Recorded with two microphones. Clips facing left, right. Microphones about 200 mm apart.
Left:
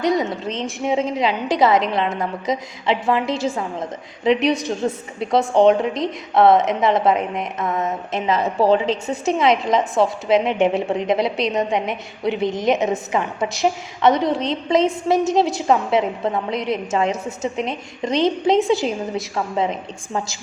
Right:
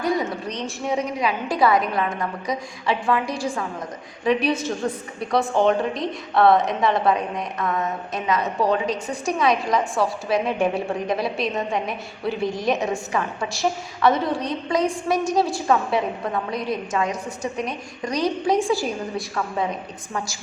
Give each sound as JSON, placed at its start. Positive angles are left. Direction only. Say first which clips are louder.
{"t": 0.0, "sound": "a woman's voice", "louder": "left 4 dB", "side_deg": 20}